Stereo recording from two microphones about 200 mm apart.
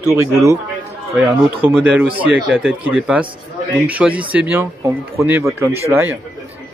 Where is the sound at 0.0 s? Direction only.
15° right (ahead or behind).